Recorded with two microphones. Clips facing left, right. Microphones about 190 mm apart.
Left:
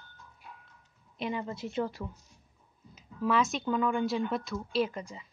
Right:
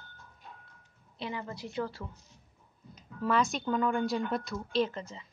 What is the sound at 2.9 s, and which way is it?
A woman's voice, 5° left (ahead or behind).